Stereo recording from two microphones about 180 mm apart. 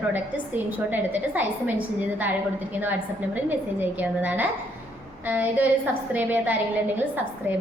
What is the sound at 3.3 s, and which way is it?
A woman's voice, 10° right (ahead or behind).